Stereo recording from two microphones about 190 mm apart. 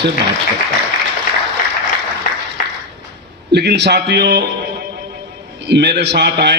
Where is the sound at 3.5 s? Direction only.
60° right (ahead or behind).